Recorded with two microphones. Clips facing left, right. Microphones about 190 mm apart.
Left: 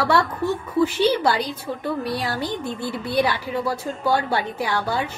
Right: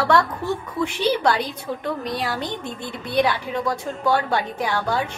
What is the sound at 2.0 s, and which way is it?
Speech, 20° right (ahead or behind).